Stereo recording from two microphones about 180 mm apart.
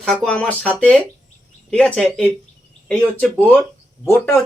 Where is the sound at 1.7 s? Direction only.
5° left (ahead or behind).